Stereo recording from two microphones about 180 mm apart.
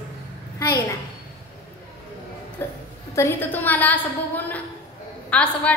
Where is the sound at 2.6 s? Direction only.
15° left (ahead or behind).